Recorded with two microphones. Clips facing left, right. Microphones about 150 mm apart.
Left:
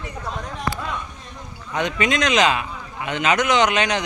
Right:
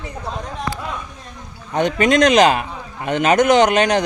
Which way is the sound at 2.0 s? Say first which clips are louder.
Right 7 dB; 40° right (ahead or behind).